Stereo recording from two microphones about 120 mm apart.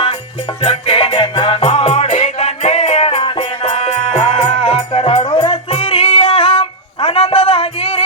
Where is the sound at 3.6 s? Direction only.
65° left (ahead or behind).